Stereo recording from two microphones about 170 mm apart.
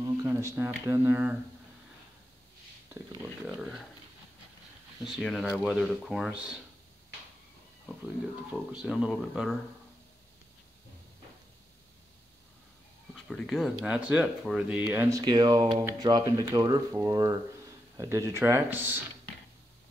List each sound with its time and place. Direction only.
0.0 s speech: 15° right (ahead or behind)
3.2 s speech: 5° right (ahead or behind)
5.0 s speech: centre (ahead or behind)
8.5 s speech: 5° right (ahead or behind)
13.1 s speech: centre (ahead or behind)